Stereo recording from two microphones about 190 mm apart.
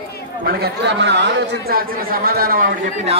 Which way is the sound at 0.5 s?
60° right (ahead or behind).